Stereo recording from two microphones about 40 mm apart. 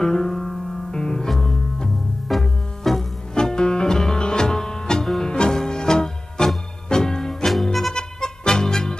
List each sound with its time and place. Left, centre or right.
0.0 s music: centre
2.3 s music: centre
3.3 s music: centre
7.9 s music: centre